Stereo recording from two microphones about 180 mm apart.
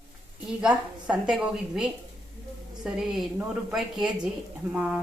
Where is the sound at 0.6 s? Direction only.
5° right (ahead or behind).